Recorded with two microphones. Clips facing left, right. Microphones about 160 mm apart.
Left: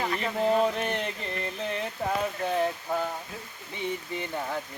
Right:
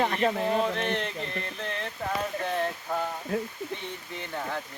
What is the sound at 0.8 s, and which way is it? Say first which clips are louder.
Speech: right 1 dB; 5° left (ahead or behind).